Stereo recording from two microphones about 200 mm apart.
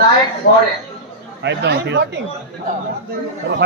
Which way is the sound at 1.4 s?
60° right (ahead or behind).